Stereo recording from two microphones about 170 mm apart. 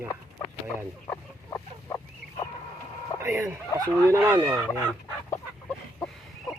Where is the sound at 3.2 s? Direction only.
20° right (ahead or behind).